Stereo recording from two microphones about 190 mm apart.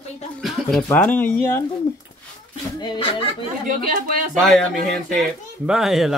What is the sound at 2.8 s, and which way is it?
Speech, 25° left (ahead or behind).